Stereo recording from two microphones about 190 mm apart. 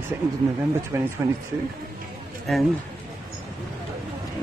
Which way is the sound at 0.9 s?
15° right (ahead or behind).